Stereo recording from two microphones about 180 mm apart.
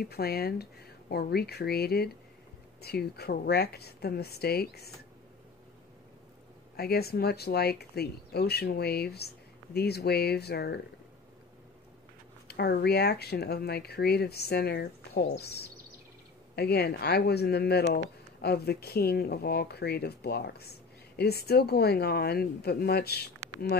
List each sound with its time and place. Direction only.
0.0 s speech: 60° left (ahead or behind)
6.8 s speech: 60° left (ahead or behind)
12.4 s speech: 65° left (ahead or behind)